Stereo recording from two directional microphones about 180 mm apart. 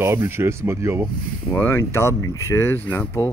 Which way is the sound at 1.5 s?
15° left (ahead or behind).